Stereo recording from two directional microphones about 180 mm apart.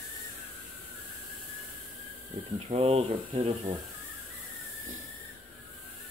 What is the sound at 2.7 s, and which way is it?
Speech, 35° right (ahead or behind).